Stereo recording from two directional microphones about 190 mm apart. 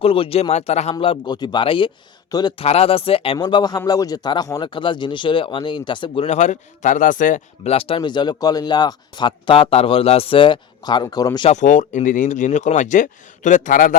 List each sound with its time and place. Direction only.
0.0 s a man's voice: 30° left (ahead or behind)
6.2 s a man's voice: 40° left (ahead or behind); by 11.4 s 20° left (ahead or behind)
11.4 s speech: 40° left (ahead or behind)